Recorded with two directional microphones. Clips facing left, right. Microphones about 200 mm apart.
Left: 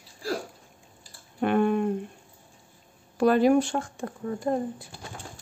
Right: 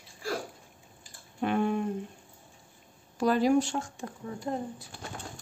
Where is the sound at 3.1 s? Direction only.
60° left (ahead or behind).